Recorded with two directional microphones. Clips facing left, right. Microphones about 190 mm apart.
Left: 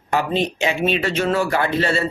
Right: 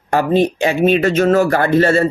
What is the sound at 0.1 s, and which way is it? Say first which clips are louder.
Speech: right 6 dB; 50° right (ahead or behind).